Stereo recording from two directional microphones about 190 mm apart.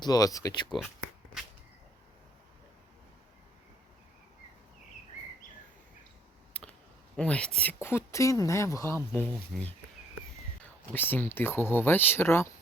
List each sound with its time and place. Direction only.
0.0 s speech: 20° left (ahead or behind)
6.5 s computer keyboard: 5° left (ahead or behind)
7.2 s speech: 5° left (ahead or behind)
10.9 s speech: 10° left (ahead or behind)